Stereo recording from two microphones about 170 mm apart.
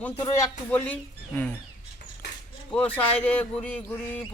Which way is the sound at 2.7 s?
10° left (ahead or behind).